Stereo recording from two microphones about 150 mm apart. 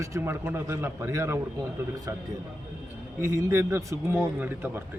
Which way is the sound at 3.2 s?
20° right (ahead or behind).